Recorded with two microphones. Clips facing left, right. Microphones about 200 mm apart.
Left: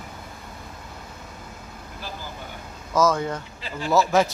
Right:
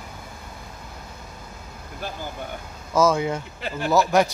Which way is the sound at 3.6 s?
60° right (ahead or behind).